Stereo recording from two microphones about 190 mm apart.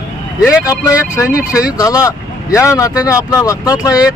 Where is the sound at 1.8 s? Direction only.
15° left (ahead or behind).